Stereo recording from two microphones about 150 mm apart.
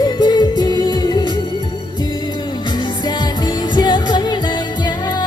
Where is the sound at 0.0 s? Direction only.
30° left (ahead or behind).